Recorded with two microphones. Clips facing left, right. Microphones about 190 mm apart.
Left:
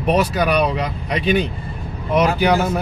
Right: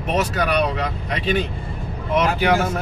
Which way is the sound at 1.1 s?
15° left (ahead or behind).